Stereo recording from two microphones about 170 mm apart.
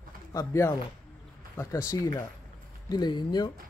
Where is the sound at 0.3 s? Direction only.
15° left (ahead or behind).